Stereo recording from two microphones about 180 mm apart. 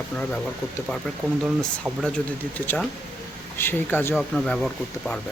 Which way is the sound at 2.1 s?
10° left (ahead or behind).